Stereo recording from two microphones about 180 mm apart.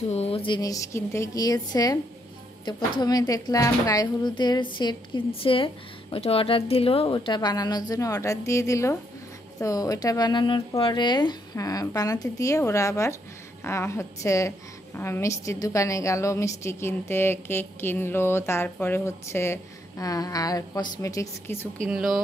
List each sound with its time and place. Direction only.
0.1 s a woman's voice: 35° left (ahead or behind); by 21.6 s 15° left (ahead or behind)
21.8 s speech: 5° right (ahead or behind)